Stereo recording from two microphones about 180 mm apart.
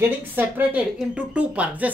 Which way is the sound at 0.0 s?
10° right (ahead or behind).